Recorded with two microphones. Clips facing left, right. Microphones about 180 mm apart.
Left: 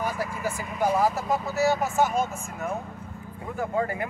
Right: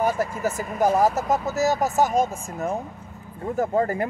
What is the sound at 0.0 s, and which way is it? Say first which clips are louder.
Speech: right 6 dB; 45° right (ahead or behind).